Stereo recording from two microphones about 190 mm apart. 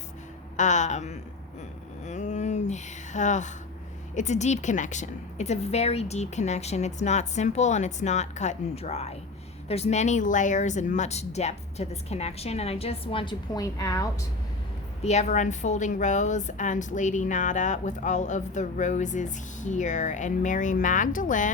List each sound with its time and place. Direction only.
0.5 s a woman's voice: 40° left (ahead or behind)
2.0 s a sound: 40° left (ahead or behind)
4.1 s a woman's voice: 40° left (ahead or behind); by 14.1 s 15° left (ahead or behind)
15.0 s a woman's voice: 35° left (ahead or behind)